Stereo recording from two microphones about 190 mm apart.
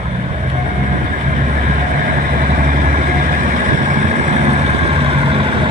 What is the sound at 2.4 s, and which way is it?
Vehicle, 45° right (ahead or behind).